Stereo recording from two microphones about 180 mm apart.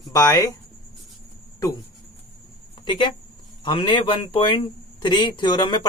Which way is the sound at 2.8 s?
25° left (ahead or behind).